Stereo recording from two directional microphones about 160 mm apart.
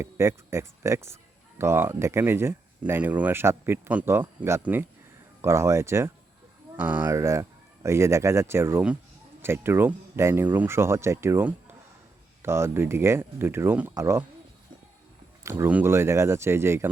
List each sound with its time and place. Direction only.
0.0 s speech: 15° right (ahead or behind)
15.4 s speech: 15° right (ahead or behind)